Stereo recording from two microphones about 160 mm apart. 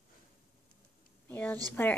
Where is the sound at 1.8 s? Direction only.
15° left (ahead or behind).